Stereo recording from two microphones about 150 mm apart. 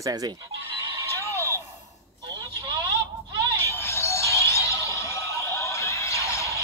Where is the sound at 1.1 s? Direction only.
20° left (ahead or behind).